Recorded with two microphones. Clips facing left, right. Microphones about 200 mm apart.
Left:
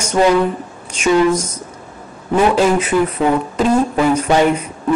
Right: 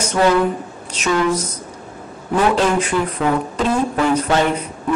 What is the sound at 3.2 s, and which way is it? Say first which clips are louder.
Speech: left 2 dB; 20° left (ahead or behind).